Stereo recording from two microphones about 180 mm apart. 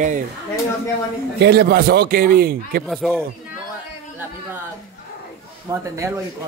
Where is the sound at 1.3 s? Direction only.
65° right (ahead or behind).